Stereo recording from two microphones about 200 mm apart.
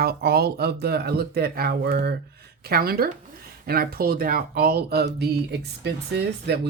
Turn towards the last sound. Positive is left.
turn(degrees=-55)  # may be behind; listen again after turning